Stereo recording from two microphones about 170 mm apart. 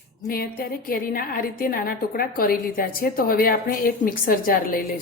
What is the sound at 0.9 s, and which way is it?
A woman's voice, 60° left (ahead or behind).